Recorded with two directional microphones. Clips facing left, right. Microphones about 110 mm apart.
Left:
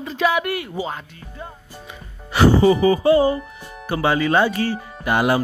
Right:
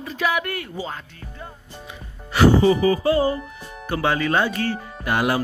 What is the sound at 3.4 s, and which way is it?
Speech, 10° left (ahead or behind).